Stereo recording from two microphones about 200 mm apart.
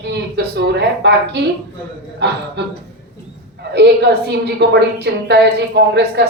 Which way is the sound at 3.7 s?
55° right (ahead or behind).